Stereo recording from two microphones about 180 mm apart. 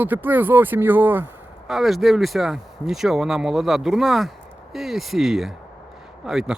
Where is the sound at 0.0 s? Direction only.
10° right (ahead or behind).